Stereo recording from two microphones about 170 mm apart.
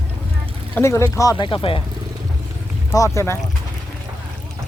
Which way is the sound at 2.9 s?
20° left (ahead or behind).